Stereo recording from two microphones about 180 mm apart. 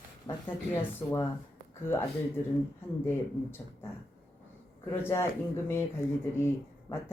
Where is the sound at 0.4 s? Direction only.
10° left (ahead or behind).